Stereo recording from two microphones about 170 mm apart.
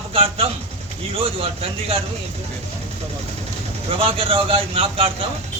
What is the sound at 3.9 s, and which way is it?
A man's voice, 30° right (ahead or behind).